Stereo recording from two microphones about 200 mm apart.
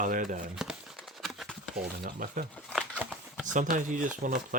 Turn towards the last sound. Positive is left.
turn(degrees=-45)  # may be behind; listen again after turning